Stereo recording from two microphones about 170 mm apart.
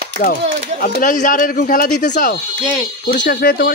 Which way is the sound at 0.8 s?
50° left (ahead or behind).